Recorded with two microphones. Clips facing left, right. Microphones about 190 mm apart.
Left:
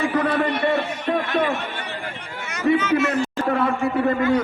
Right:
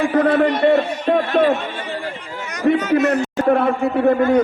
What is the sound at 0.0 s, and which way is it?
A man's voice, 50° right (ahead or behind).